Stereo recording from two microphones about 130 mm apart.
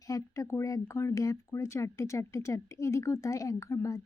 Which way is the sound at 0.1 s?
25° left (ahead or behind).